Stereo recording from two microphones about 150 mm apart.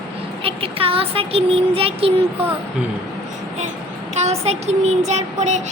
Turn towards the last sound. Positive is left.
turn(degrees=-50)  # may be behind; listen again after turning